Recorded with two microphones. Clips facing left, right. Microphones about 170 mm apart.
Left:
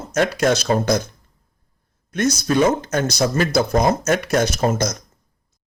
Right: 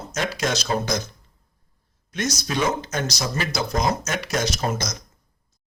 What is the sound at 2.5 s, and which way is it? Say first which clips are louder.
Speech: left 7 dB; 55° left (ahead or behind).